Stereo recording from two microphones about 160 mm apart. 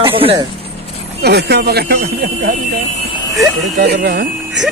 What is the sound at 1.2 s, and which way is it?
Speech, 90° right.